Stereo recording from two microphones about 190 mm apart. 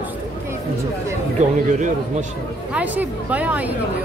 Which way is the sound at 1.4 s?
35° right (ahead or behind).